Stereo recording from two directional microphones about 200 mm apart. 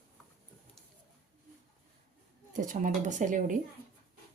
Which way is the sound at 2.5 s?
40° right (ahead or behind).